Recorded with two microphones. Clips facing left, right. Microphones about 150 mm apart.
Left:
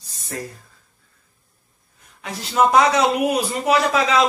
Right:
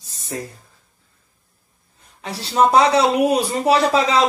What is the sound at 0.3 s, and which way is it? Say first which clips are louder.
Speech: right 2 dB; 20° right (ahead or behind).